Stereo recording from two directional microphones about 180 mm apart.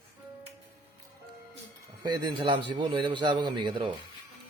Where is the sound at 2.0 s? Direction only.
25° right (ahead or behind).